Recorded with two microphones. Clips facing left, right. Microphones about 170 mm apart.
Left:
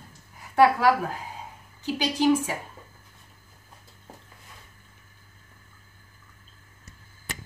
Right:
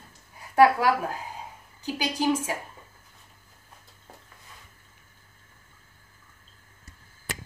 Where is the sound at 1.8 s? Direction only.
10° right (ahead or behind).